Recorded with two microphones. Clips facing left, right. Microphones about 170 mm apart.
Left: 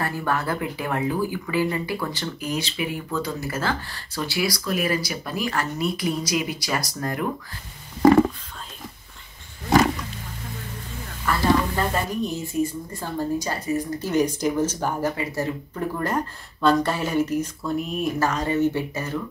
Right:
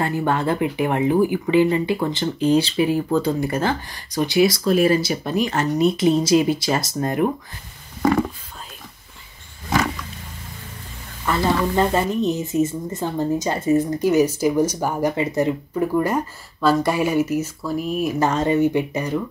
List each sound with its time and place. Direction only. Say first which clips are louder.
0.0 s speech: right 5 dB; 20° right (ahead or behind)
11.3 s speech: right 1 dB; 20° right (ahead or behind)
14.0 s speech: right 3 dB; 10° right (ahead or behind)
18.2 s speech: right 4 dB; 20° right (ahead or behind)